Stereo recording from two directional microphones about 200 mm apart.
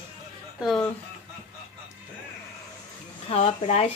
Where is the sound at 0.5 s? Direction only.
Centre (ahead or behind).